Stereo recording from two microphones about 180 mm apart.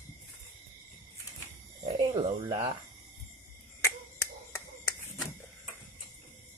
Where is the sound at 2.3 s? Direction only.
25° right (ahead or behind).